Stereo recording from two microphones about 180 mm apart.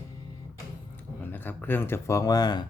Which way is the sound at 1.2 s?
10° left (ahead or behind).